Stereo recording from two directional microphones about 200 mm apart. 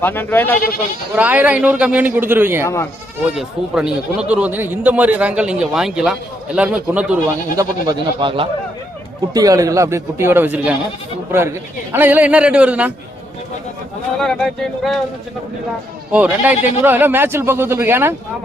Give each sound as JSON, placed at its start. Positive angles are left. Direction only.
{"t": 0.0, "sound": "speech", "side_deg": 10}
{"t": 1.1, "sound": "speech", "side_deg": -10}
{"t": 7.5, "sound": "speech", "side_deg": -15}
{"t": 11.9, "sound": "speech", "side_deg": -10}
{"t": 14.2, "sound": "speech", "side_deg": 5}
{"t": 16.1, "sound": "speech", "side_deg": -5}